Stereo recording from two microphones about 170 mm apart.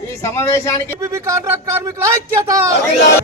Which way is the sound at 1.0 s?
15° right (ahead or behind).